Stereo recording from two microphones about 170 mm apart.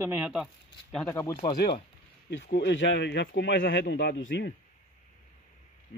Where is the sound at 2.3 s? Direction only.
90° left.